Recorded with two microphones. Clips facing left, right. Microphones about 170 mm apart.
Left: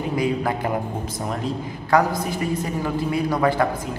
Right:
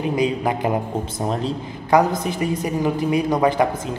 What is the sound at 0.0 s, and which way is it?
A man's voice, 20° right (ahead or behind).